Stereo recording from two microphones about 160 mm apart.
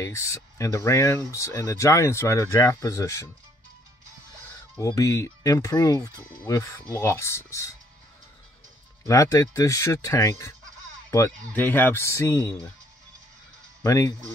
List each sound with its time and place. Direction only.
0.0 s speech: 20° left (ahead or behind)
4.7 s speech: 20° left (ahead or behind)
9.0 s speech: 20° left (ahead or behind)
13.8 s speech: 20° left (ahead or behind)